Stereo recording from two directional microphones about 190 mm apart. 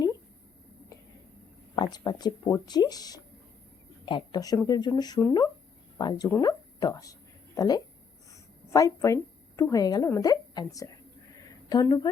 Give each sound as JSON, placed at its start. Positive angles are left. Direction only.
{"t": 1.7, "sound": "speech", "side_deg": 20}
{"t": 6.4, "sound": "a sound", "side_deg": 20}
{"t": 8.7, "sound": "a woman's voice", "side_deg": 15}